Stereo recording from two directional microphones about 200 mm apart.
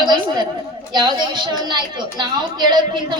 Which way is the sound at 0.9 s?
20° right (ahead or behind).